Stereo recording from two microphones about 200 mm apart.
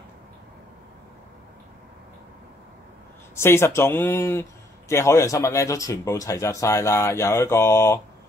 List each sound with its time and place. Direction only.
3.3 s a man's voice: 15° left (ahead or behind)